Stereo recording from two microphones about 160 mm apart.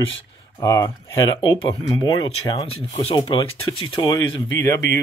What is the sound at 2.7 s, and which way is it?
Speech, 40° left (ahead or behind).